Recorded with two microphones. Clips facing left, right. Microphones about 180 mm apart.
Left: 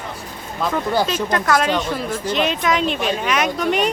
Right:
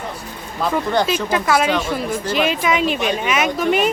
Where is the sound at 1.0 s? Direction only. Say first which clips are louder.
Right 1 dB; 10° right (ahead or behind).